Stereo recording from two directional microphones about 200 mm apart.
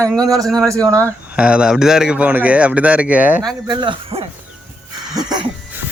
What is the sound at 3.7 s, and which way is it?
Speech, 25° right (ahead or behind).